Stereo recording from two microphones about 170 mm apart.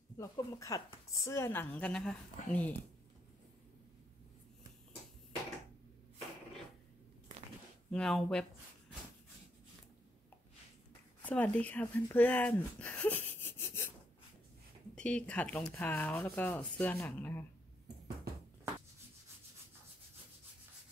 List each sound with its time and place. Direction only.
0.2 s speech: 20° left (ahead or behind)
7.9 s speech: 5° left (ahead or behind)
11.2 s speech: 10° left (ahead or behind)
15.0 s speech: 5° left (ahead or behind)